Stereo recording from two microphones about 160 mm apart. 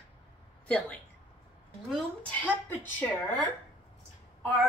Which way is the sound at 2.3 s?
10° left (ahead or behind).